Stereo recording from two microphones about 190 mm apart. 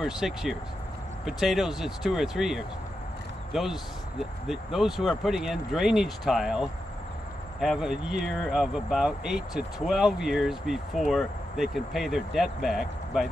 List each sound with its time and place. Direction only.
0.0 s speech: centre (ahead or behind)